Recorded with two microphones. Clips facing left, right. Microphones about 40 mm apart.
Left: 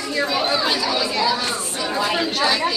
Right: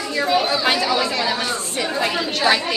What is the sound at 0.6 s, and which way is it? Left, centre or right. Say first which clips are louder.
Chatter: right 2 dB; right.